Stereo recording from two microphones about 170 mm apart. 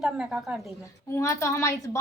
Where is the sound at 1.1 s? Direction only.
20° left (ahead or behind).